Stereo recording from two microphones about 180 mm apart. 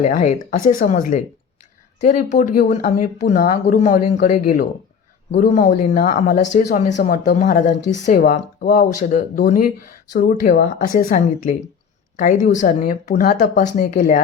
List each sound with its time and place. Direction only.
0.0 s speech: 40° left (ahead or behind)